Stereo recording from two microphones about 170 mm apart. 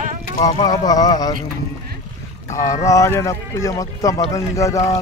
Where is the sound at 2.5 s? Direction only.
20° left (ahead or behind).